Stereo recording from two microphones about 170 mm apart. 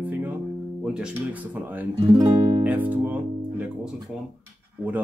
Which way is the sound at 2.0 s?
30° right (ahead or behind).